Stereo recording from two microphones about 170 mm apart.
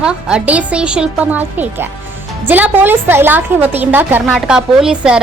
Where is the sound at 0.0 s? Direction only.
5° right (ahead or behind).